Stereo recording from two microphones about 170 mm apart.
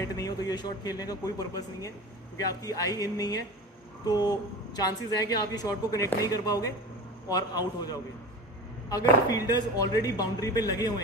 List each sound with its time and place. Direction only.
0.0 s speech: 20° left (ahead or behind)